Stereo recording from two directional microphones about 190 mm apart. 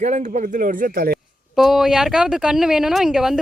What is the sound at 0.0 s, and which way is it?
Speech, 40° right (ahead or behind).